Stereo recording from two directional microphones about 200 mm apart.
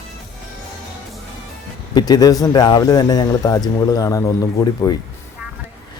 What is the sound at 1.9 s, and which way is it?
Speech, 20° left (ahead or behind).